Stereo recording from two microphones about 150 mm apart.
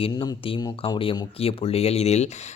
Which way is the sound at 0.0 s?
35° left (ahead or behind).